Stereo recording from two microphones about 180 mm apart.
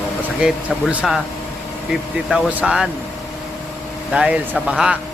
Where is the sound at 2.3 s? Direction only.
5° right (ahead or behind).